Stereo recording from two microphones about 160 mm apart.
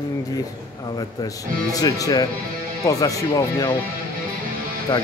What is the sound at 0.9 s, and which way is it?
Speech, 25° left (ahead or behind).